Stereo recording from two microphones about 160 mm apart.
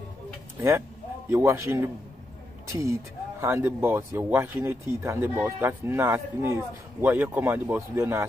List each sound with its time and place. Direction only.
0.6 s speech: 15° right (ahead or behind)